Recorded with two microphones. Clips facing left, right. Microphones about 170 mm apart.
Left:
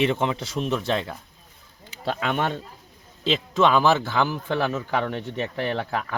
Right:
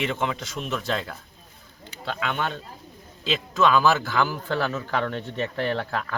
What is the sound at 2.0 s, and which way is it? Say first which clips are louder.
Speech: left 3 dB; 40° left (ahead or behind).